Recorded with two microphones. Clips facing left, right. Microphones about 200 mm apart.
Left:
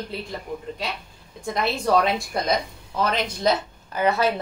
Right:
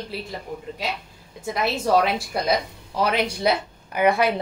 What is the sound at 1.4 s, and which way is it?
Speech, 5° right (ahead or behind).